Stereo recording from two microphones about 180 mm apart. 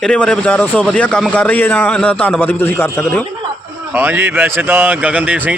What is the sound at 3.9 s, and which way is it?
Speech, 10° right (ahead or behind).